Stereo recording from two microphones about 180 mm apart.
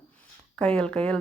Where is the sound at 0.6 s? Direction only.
5° left (ahead or behind).